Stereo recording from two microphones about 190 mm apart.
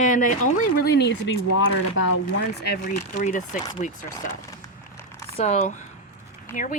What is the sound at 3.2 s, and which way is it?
Speech, 45° left (ahead or behind).